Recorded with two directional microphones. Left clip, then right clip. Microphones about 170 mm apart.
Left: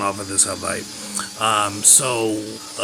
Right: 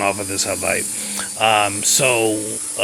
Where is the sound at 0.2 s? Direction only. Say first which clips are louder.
Even; 25° right (ahead or behind).